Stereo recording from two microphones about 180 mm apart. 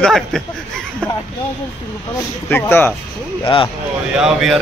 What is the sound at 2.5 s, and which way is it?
Speech, 10° left (ahead or behind).